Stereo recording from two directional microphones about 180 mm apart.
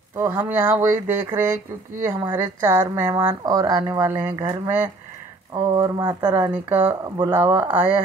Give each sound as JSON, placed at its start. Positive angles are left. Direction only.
{"t": 0.1, "sound": "speech", "side_deg": -15}
{"t": 5.5, "sound": "speech", "side_deg": -20}